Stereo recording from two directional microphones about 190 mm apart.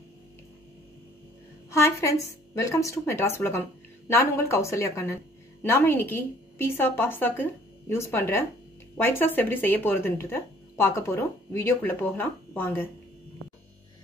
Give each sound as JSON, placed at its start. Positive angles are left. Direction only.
{"t": 1.7, "sound": "speech", "side_deg": 15}